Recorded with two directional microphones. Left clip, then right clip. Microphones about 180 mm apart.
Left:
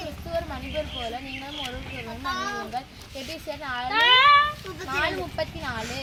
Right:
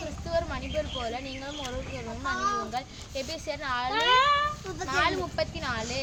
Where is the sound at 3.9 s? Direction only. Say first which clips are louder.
Left 7 dB; 35° right (ahead or behind).